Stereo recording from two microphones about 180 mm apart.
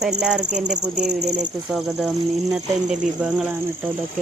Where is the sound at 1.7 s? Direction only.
Centre (ahead or behind).